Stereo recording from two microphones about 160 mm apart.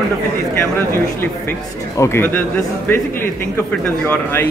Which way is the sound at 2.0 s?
15° left (ahead or behind).